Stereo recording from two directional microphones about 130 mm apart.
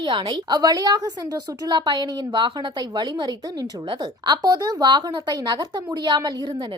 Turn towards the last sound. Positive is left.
turn(degrees=-35)  # may be behind; listen again after turning